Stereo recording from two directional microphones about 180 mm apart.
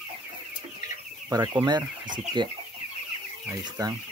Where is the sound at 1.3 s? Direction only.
20° right (ahead or behind).